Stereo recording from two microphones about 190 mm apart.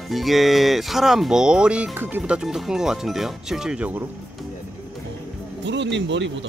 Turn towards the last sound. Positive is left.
turn(degrees=-70)  # may be behind; listen again after turning